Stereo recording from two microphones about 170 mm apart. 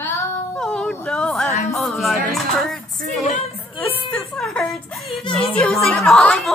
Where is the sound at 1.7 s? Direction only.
Centre (ahead or behind).